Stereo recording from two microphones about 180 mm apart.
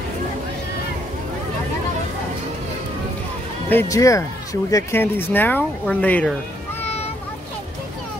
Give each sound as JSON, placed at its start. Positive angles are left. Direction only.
{"t": 3.7, "sound": "speech", "side_deg": 15}